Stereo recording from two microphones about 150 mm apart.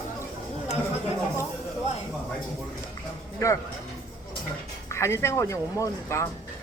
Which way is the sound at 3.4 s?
20° left (ahead or behind).